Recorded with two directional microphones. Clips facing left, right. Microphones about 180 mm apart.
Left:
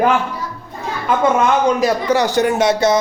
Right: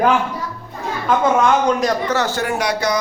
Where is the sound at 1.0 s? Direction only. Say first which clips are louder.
Even; centre (ahead or behind); by 3.0 s 25° left (ahead or behind).